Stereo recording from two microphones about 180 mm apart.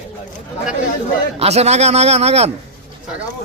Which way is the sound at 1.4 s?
35° right (ahead or behind).